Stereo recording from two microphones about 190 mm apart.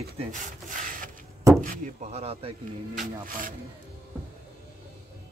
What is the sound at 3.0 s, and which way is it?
Speech, 45° right (ahead or behind).